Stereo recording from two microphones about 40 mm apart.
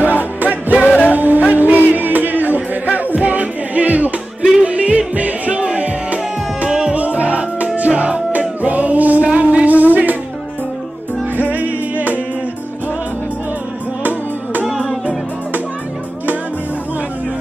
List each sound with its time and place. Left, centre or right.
0.1 s music: right
0.8 s music: left
1.1 s music: right
11.5 s music: right